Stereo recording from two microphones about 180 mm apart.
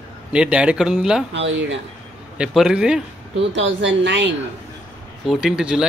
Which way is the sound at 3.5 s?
85° right.